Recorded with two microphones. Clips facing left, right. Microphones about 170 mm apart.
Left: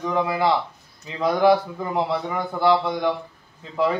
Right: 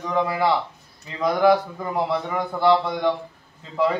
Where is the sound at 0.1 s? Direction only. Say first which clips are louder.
Right 1 dB; 15° left (ahead or behind).